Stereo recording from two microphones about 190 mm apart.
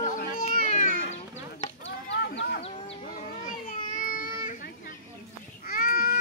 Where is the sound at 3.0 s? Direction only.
45° left (ahead or behind).